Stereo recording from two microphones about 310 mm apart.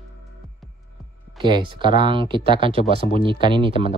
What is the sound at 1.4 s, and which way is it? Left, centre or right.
Speech, centre.